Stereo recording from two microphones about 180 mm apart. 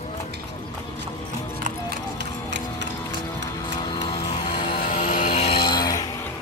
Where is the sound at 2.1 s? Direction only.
75° right (ahead or behind).